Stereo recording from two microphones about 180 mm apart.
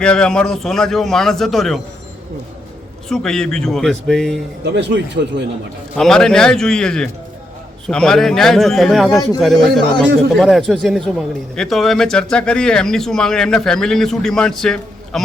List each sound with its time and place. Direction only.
0.0 s speech: 5° left (ahead or behind)
3.1 s speech: 5° left (ahead or behind)
4.7 s speech: 75° right (ahead or behind)
6.0 s speech: 5° left (ahead or behind)